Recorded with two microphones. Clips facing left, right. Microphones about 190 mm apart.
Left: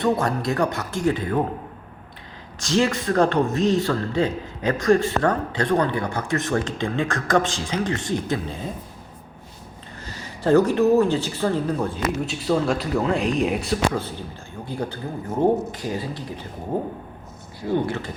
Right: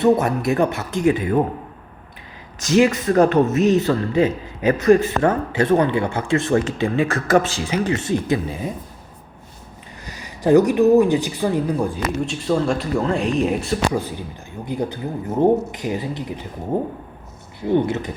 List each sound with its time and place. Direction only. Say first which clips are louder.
0.0 s speech: right 5 dB; 20° right (ahead or behind)
2.6 s speech: right 5 dB; 10° right (ahead or behind)
10.1 s speech: right 3 dB; 15° right (ahead or behind)
12.2 s speech: right 3 dB; centre (ahead or behind)
13.9 s speech: right 4 dB; 15° right (ahead or behind)